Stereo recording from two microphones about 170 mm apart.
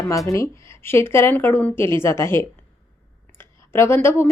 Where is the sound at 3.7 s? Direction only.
15° left (ahead or behind).